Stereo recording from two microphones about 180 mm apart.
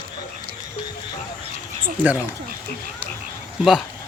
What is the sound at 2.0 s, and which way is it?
Speech, 10° right (ahead or behind).